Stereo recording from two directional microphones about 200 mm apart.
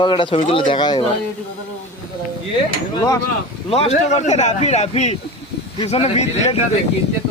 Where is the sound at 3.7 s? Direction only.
30° left (ahead or behind).